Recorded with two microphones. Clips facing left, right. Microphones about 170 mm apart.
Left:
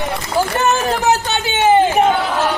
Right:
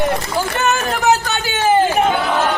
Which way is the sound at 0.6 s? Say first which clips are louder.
Left 2 dB; 35° left (ahead or behind).